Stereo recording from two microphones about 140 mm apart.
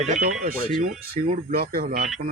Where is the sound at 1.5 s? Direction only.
90° right; by 2.1 s 65° right (ahead or behind).